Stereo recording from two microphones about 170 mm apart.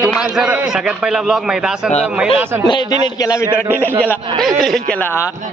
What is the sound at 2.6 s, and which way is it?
A man's voice, 25° left (ahead or behind).